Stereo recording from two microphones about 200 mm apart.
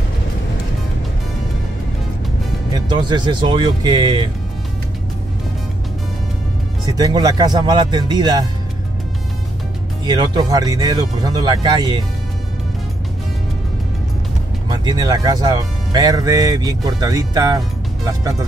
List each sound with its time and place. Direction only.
2.7 s speech: 20° right (ahead or behind)
6.9 s speech: 20° right (ahead or behind)
10.0 s speech: 20° right (ahead or behind)
14.7 s speech: 20° right (ahead or behind)